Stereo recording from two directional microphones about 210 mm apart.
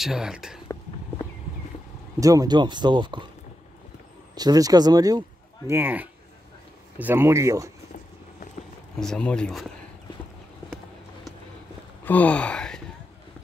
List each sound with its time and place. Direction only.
0.0 s speech: 5° right (ahead or behind)
2.1 s speech: 15° right (ahead or behind)
4.4 s speech: 20° right (ahead or behind)
9.0 s speech: 5° left (ahead or behind)
12.0 s speech: 5° left (ahead or behind)